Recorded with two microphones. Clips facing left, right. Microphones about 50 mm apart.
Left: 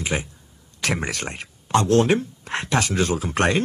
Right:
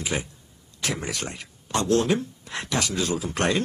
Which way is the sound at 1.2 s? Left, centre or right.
Left.